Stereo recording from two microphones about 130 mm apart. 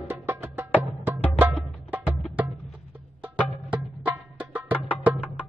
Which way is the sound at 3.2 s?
10° right (ahead or behind).